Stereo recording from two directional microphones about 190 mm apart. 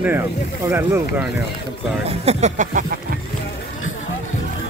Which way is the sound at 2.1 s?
35° right (ahead or behind).